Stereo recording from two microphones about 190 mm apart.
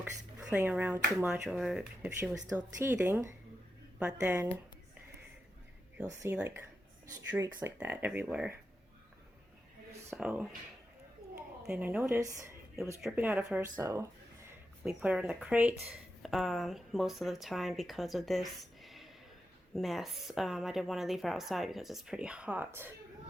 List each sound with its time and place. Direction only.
0.0 s speech: 5° right (ahead or behind)
2.6 s speech: 15° right (ahead or behind)
6.3 s speech: 10° right (ahead or behind)
10.2 s speech: 5° right (ahead or behind)
11.6 s speech: 5° right (ahead or behind)
14.8 s speech: 5° right (ahead or behind)